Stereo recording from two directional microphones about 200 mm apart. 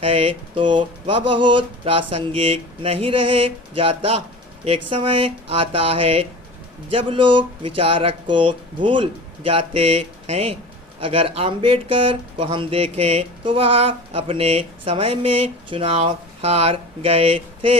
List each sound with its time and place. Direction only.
0.0 s speech: 30° right (ahead or behind)